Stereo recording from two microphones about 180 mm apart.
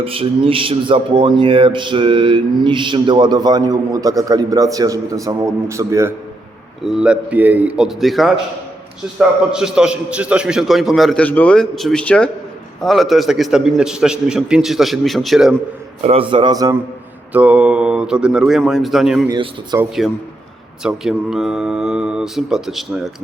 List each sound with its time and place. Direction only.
0.0 s mantra: 30° right (ahead or behind); by 6.1 s 15° right (ahead or behind)
6.8 s a man's voice: 5° right (ahead or behind)
16.0 s mantra: 30° right (ahead or behind)
17.3 s a man's voice: 5° right (ahead or behind)
19.3 s mantra: 20° right (ahead or behind)
20.0 s a man's voice: centre (ahead or behind)